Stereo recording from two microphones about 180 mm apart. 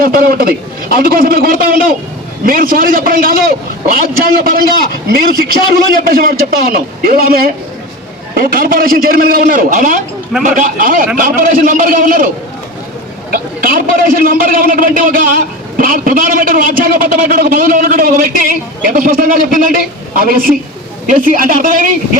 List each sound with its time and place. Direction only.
0.0 s a man's voice: 55° right (ahead or behind)
13.3 s a man's voice: 50° right (ahead or behind)